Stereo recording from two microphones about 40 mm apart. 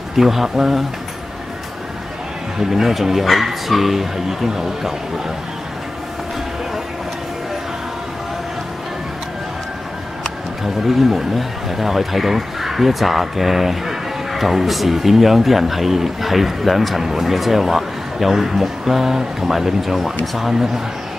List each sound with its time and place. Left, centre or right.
0.1 s speech: centre
2.6 s speech: centre
10.6 s speech: centre